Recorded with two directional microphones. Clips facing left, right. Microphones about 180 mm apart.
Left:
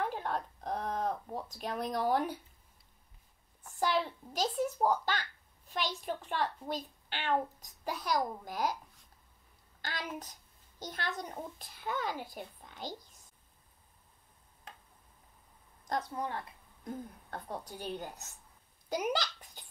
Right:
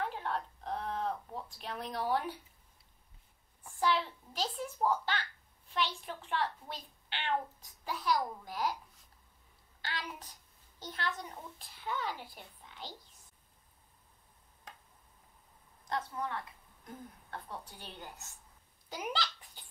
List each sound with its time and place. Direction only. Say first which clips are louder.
0.0 s a sound: left 2 dB; 40° left (ahead or behind)
3.8 s a child's voice: left 1 dB; 45° left (ahead or behind)
9.8 s a woman's voice: left 2 dB; 45° left (ahead or behind)
15.9 s a child's voice: left 2 dB; 35° left (ahead or behind)
18.9 s babbling: left 5 dB; 45° left (ahead or behind)